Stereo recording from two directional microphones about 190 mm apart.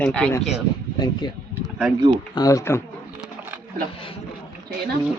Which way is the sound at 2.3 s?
15° left (ahead or behind).